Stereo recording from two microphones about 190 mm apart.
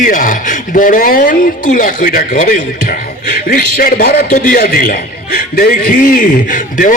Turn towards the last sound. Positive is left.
turn(degrees=45)  # may be behind; listen again after turning